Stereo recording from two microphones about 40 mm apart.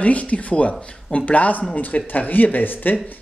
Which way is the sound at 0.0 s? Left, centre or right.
Left.